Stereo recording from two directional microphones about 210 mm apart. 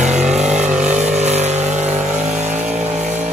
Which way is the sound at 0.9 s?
35° right (ahead or behind).